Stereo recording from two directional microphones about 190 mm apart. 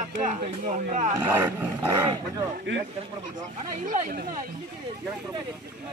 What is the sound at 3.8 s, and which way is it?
Speech, 45° right (ahead or behind).